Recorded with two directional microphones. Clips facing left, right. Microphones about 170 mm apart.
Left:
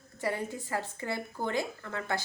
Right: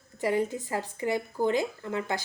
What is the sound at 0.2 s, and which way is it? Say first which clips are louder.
Speech: right 6 dB; 15° right (ahead or behind).